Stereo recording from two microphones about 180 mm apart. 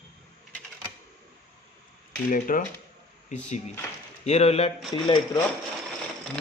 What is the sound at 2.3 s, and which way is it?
Speech, 50° left (ahead or behind).